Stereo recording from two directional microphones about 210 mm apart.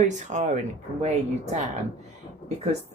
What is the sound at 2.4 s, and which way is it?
Speech, 30° right (ahead or behind).